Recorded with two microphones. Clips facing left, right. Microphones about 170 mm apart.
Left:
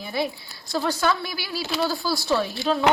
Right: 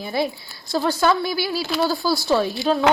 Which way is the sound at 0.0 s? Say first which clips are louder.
Right 3 dB; 40° right (ahead or behind).